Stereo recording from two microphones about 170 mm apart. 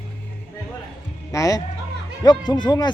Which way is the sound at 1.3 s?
20° left (ahead or behind).